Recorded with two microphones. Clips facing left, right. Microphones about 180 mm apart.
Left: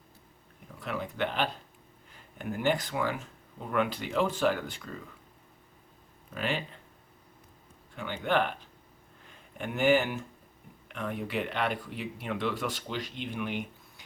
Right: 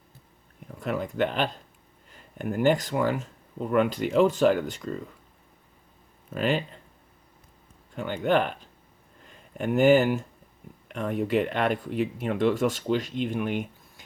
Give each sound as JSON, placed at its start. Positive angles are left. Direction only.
{"t": 0.8, "sound": "speech", "side_deg": -45}
{"t": 6.3, "sound": "speech", "side_deg": -40}
{"t": 7.9, "sound": "speech", "side_deg": -45}
{"t": 9.6, "sound": "speech", "side_deg": -40}